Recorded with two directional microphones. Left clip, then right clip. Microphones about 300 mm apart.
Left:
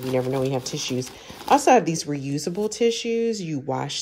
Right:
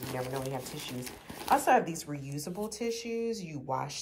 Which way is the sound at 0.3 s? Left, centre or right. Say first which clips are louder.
Left 12 dB; left.